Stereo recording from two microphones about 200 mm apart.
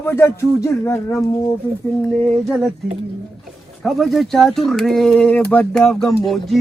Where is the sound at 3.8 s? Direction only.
Centre (ahead or behind).